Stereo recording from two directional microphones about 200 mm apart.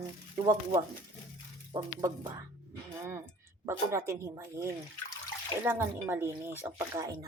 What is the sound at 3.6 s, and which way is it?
A woman's voice, 15° right (ahead or behind).